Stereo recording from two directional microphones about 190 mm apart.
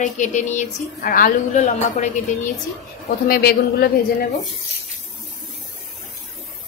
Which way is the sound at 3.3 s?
55° left (ahead or behind).